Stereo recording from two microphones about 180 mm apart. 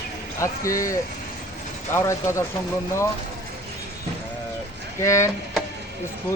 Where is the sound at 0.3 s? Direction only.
15° left (ahead or behind).